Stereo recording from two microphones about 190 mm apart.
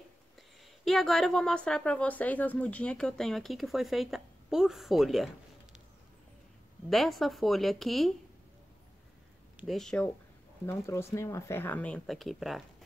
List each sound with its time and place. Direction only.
0.4 s speech: centre (ahead or behind)
6.9 s speech: centre (ahead or behind)
9.6 s speech: centre (ahead or behind)
10.7 s speech: 15° left (ahead or behind)